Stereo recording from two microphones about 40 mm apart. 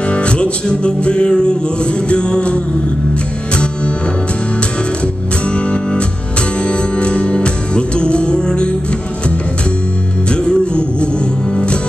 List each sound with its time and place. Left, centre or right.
0.1 s music: left
5.5 s music: left
10.3 s music: left